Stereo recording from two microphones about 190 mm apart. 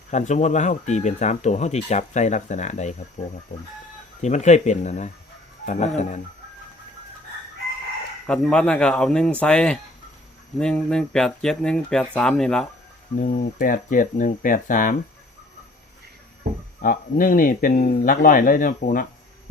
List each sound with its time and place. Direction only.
0.1 s speech: 40° left (ahead or behind)
4.2 s speech: 40° left (ahead or behind)
8.3 s speech: 5° left (ahead or behind)
13.1 s speech: 45° left (ahead or behind)
16.8 s speech: 50° left (ahead or behind)